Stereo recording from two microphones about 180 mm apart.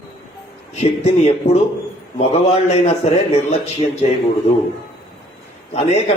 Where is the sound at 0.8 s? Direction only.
35° left (ahead or behind).